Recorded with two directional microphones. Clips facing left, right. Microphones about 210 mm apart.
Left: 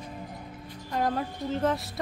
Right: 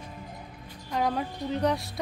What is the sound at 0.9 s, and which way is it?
A woman's voice, centre (ahead or behind).